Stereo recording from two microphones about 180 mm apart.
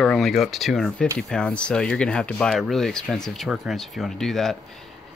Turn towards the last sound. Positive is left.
turn(degrees=0)  # may be behind; listen again after turning